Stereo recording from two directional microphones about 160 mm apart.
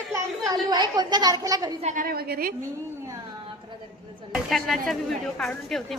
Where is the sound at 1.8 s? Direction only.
55° right (ahead or behind); by 2.5 s 70° right (ahead or behind).